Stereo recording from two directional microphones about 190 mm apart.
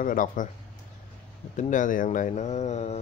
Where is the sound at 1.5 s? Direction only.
40° left (ahead or behind).